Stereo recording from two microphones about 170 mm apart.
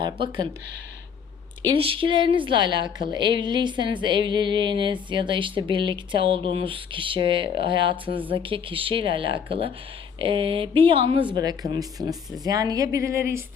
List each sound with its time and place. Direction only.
1.7 s speech: 30° right (ahead or behind)
11.3 s speech: 25° right (ahead or behind)